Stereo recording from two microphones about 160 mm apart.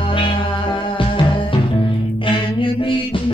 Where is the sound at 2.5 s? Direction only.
35° left (ahead or behind).